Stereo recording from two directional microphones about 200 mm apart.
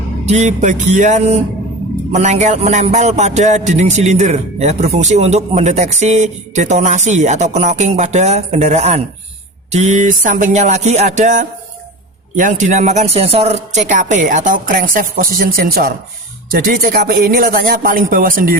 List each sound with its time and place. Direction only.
0.3 s a man's voice: 35° right (ahead or behind)